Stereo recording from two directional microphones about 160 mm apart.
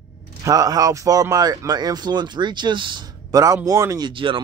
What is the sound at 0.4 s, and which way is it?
Speech, 20° right (ahead or behind).